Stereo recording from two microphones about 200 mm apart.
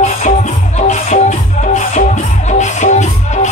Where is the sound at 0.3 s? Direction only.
40° left (ahead or behind).